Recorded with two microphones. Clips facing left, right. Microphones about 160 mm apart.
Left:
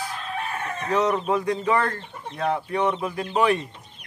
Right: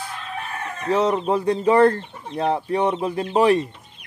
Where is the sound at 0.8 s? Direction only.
30° right (ahead or behind).